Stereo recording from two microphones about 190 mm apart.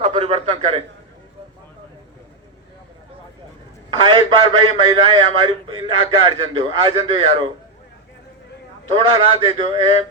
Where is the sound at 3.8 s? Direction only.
25° right (ahead or behind).